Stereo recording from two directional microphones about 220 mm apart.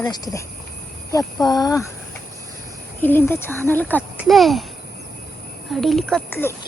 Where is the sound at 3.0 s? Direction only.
10° left (ahead or behind).